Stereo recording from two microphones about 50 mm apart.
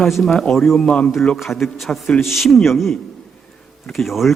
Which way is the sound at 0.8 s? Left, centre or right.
Left.